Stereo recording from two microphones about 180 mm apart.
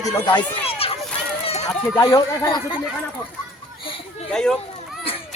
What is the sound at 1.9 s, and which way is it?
Speech, 20° left (ahead or behind).